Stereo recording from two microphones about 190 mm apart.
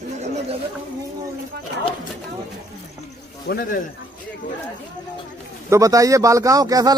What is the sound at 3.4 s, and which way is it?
Speech, 50° left (ahead or behind).